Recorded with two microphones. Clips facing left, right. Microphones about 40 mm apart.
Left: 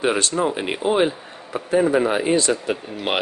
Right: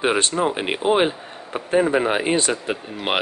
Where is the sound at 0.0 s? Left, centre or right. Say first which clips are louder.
Even; right.